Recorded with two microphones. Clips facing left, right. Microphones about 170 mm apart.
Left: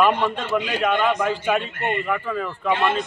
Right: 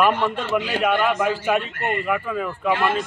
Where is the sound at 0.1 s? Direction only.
15° left (ahead or behind).